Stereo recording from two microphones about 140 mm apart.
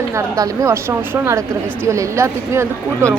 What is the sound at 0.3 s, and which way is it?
Speech, 20° right (ahead or behind).